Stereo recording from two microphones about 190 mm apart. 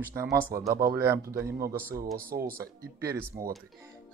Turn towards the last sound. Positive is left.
turn(degrees=-15)  # may be behind; listen again after turning